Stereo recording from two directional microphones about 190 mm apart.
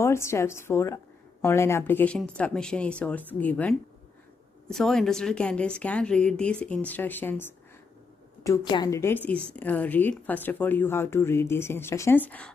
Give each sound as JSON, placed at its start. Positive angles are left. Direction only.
{"t": 0.0, "sound": "a woman's voice", "side_deg": 15}
{"t": 8.5, "sound": "a woman's voice", "side_deg": 20}